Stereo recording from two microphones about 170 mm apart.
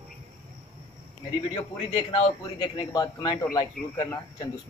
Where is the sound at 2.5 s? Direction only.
25° left (ahead or behind).